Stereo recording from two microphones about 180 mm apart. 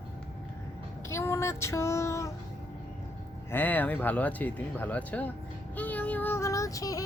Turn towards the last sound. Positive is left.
turn(degrees=20)  # may be behind; listen again after turning